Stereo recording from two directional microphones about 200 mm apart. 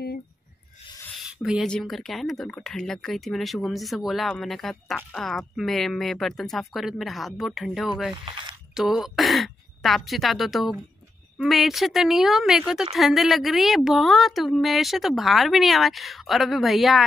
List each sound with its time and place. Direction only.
1.4 s speech: centre (ahead or behind)
8.3 s a sound: 25° right (ahead or behind)
8.7 s a woman's voice: centre (ahead or behind)